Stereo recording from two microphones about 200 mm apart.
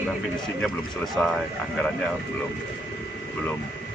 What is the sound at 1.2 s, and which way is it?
Speech, 10° left (ahead or behind).